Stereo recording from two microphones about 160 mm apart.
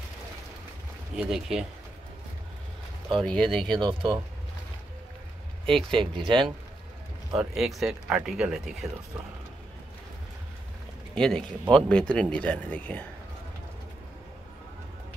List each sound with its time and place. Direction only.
1.1 s speech: 5° right (ahead or behind)
3.1 s speech: 5° left (ahead or behind)
3.7 s speech: 30° right (ahead or behind)
5.9 s speech: 30° right (ahead or behind)
7.3 s speech: centre (ahead or behind)
11.1 s speech: 5° left (ahead or behind)